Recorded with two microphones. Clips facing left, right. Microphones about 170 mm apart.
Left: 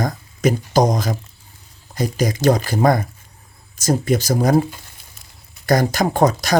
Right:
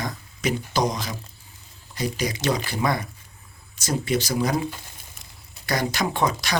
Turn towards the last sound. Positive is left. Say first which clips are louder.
# left 8 dB
turn(degrees=45)  # may be behind; listen again after turning